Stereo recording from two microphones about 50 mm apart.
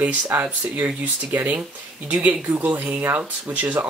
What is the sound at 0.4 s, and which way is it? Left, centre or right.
Speech, right.